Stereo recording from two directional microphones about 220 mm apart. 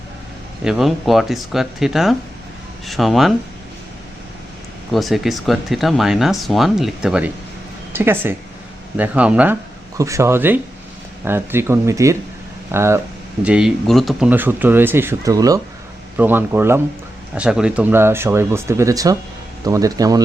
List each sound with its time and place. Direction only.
0.6 s speech: centre (ahead or behind)
4.9 s speech: centre (ahead or behind); by 20.2 s 15° right (ahead or behind)